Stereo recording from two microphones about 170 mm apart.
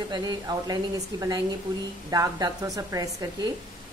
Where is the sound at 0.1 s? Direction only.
25° right (ahead or behind).